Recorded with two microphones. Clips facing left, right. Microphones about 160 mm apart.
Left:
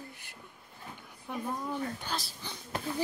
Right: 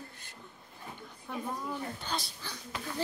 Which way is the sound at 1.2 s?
10° left (ahead or behind).